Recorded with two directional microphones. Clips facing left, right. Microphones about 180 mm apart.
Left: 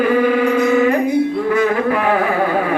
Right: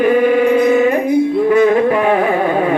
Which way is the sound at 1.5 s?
25° right (ahead or behind).